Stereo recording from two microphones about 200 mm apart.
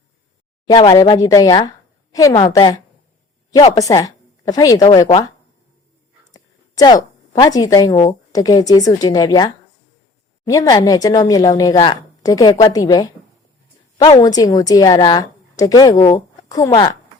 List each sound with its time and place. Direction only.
0.7 s a woman's voice: 20° left (ahead or behind)
6.3 s a woman's voice: 20° left (ahead or behind)
16.0 s speech: 35° left (ahead or behind)
16.5 s a woman's voice: 20° left (ahead or behind)